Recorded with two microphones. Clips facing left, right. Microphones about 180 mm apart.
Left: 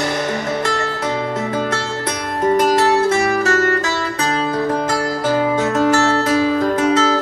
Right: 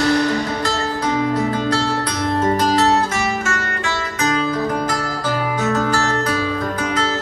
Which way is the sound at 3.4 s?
40° left (ahead or behind).